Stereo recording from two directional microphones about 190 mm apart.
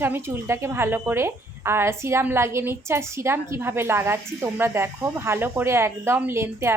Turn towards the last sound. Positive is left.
turn(degrees=-15)  # may be behind; listen again after turning